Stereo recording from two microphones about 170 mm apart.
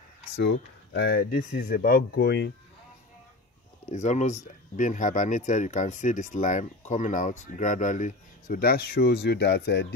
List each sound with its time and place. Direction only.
0.4 s speech: 90° left
3.9 s speech: 45° left (ahead or behind); by 9.9 s 90° left